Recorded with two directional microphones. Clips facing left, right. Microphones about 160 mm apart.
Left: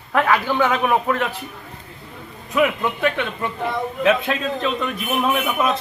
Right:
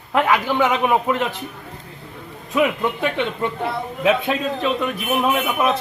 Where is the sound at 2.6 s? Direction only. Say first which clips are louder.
Left 1 dB; 20° right (ahead or behind).